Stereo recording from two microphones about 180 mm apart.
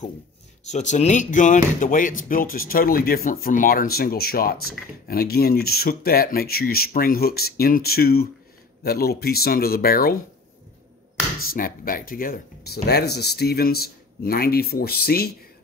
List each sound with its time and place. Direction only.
0.7 s speech: 40° left (ahead or behind)
11.4 s speech: 50° left (ahead or behind)